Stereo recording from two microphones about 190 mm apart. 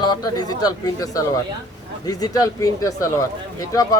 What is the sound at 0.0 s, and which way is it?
Speech, 20° left (ahead or behind).